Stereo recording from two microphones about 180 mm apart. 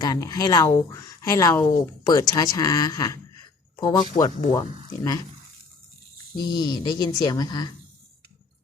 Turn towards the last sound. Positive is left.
turn(degrees=25)  # may be behind; listen again after turning